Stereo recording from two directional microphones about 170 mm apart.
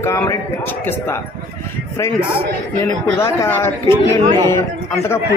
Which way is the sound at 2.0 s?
15° left (ahead or behind).